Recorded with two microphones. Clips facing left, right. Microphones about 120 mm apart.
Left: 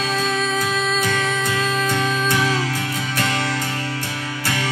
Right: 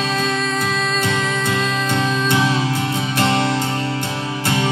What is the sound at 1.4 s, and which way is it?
Music, 25° right (ahead or behind).